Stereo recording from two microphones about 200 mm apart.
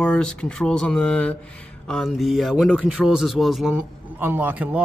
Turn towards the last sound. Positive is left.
turn(degrees=-5)  # may be behind; listen again after turning